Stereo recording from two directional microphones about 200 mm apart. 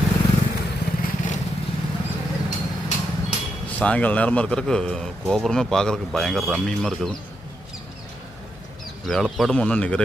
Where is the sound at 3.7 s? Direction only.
5° left (ahead or behind).